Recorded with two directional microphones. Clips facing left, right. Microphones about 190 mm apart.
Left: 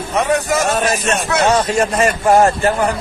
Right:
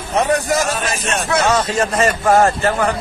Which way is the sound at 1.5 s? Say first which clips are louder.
Left 2 dB; 15° left (ahead or behind).